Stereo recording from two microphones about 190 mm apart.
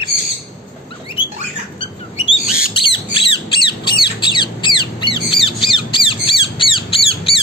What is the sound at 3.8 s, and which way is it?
Squawk, 25° left (ahead or behind).